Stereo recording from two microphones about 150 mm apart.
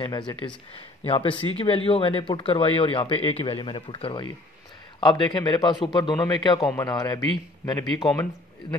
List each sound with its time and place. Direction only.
0.3 s a man's voice: 35° left (ahead or behind)